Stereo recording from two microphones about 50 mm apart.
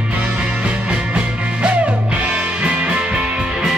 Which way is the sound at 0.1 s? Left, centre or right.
Right.